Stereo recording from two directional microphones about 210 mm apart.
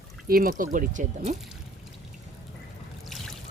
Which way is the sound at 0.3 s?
45° right (ahead or behind).